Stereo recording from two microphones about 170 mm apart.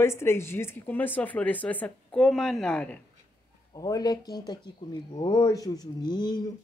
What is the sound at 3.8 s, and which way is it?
Speech, 20° left (ahead or behind).